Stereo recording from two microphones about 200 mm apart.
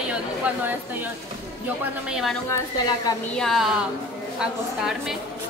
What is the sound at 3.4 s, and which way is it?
A woman's voice, centre (ahead or behind).